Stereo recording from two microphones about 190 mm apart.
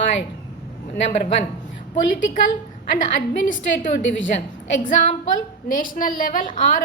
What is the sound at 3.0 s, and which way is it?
A woman's voice, 45° left (ahead or behind).